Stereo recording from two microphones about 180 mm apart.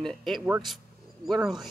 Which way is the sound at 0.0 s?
Centre (ahead or behind).